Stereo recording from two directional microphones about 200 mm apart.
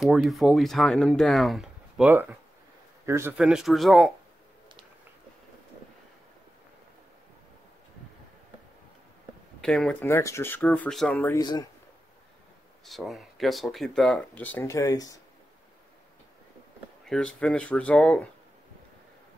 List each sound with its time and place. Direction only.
0.0 s speech: centre (ahead or behind)
9.6 s speech: 5° left (ahead or behind)
11.2 s speech: 20° left (ahead or behind)
12.8 s speech: centre (ahead or behind); by 15.1 s 20° left (ahead or behind)
17.0 s a sound: 5° left (ahead or behind)
17.4 s speech: 5° left (ahead or behind)